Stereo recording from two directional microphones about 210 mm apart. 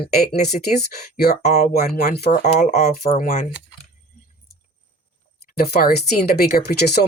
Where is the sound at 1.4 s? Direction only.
35° left (ahead or behind).